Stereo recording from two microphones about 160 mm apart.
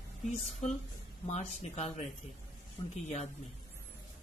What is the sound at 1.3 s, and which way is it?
Speech, 40° left (ahead or behind).